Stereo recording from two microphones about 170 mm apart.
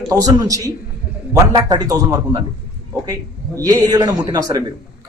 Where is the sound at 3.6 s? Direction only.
20° right (ahead or behind).